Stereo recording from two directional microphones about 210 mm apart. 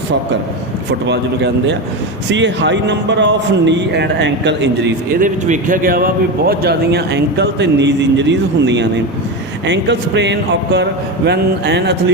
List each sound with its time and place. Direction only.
1.0 s a man's voice: 55° right (ahead or behind)
5.1 s a man's voice: 40° right (ahead or behind)